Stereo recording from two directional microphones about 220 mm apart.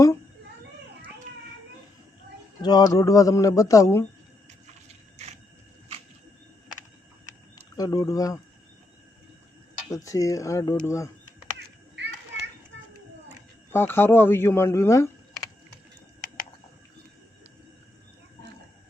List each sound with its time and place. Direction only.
2.6 s speech: 20° left (ahead or behind)
7.8 s speech: 15° left (ahead or behind)
9.9 s speech: 15° left (ahead or behind)
12.0 s children playing: 50° right (ahead or behind)
12.7 s a sound: 60° right (ahead or behind)
13.7 s speech: 10° left (ahead or behind)